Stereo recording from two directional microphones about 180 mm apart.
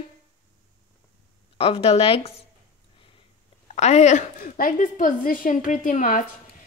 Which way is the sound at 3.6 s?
40° left (ahead or behind).